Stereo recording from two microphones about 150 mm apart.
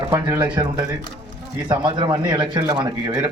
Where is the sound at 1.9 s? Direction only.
25° right (ahead or behind).